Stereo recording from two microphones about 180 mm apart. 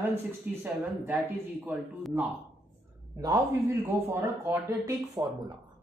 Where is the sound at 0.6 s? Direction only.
10° right (ahead or behind).